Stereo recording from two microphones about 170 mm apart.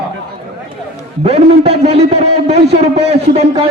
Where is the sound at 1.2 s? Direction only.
35° right (ahead or behind).